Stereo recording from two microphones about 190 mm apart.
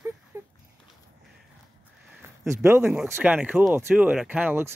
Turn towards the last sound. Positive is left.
turn(degrees=-10)  # may be behind; listen again after turning